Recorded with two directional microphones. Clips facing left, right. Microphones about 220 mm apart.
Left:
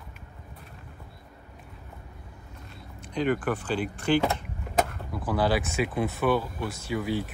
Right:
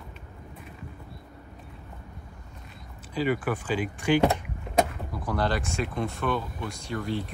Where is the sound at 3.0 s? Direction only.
5° right (ahead or behind).